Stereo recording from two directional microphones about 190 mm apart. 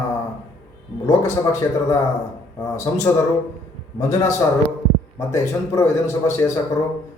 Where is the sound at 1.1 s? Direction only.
15° left (ahead or behind).